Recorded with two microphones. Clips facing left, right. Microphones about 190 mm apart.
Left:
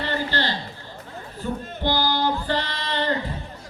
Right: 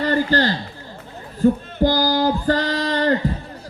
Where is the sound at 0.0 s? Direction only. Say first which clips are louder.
Right 7 dB; 45° right (ahead or behind).